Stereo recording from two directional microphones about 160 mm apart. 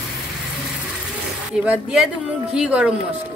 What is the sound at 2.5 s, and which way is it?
Speech, 5° right (ahead or behind).